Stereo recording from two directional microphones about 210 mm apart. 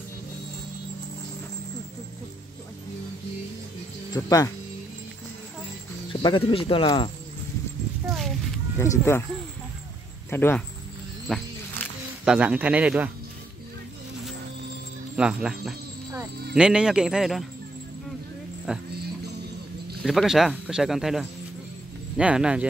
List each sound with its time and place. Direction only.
4.1 s speech: 15° left (ahead or behind)
6.2 s speech: 25° left (ahead or behind)
8.7 s speech: 10° left (ahead or behind)
10.3 s speech: 10° left (ahead or behind)
11.2 s wild animals: centre (ahead or behind)
15.1 s speech: 5° right (ahead or behind)
18.7 s speech: 5° right (ahead or behind)
20.0 s speech: centre (ahead or behind)